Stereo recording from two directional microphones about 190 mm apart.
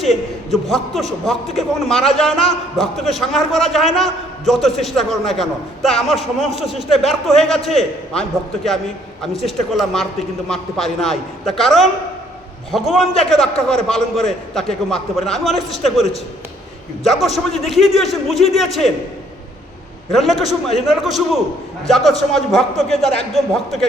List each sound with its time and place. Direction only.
0.0 s a man's voice: centre (ahead or behind)
9.5 s a man's voice: centre (ahead or behind)
20.8 s a man's voice: centre (ahead or behind)